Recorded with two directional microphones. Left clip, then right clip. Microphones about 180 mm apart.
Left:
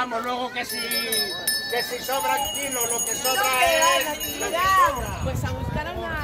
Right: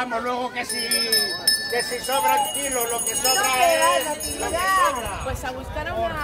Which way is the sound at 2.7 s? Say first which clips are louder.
Right 2 dB; 60° right (ahead or behind).